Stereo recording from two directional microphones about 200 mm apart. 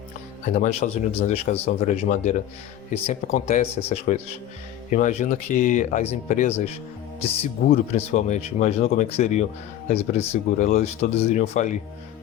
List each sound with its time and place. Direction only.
0.4 s speech: 35° left (ahead or behind)
7.9 s speech: 35° left (ahead or behind)